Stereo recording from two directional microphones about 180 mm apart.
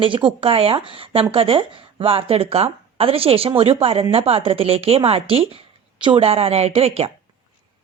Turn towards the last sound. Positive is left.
turn(degrees=-35)  # may be behind; listen again after turning